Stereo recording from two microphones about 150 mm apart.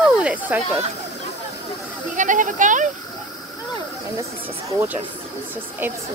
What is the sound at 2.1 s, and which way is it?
Speech, 60° right (ahead or behind).